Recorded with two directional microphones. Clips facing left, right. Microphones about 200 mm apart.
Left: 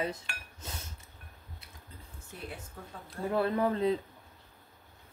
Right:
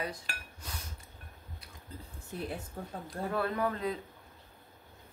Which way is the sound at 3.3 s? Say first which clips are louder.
Left 4 dB; 25° left (ahead or behind).